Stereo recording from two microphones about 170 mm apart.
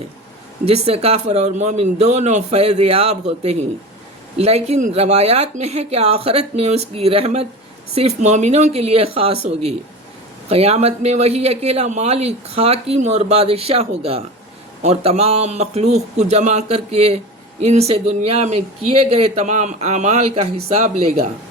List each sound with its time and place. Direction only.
0.7 s speech: 35° right (ahead or behind)